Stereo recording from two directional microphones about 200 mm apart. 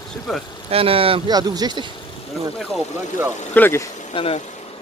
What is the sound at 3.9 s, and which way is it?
Vehicle, 30° left (ahead or behind).